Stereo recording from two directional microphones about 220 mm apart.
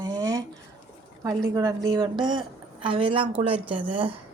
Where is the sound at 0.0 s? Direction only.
15° right (ahead or behind).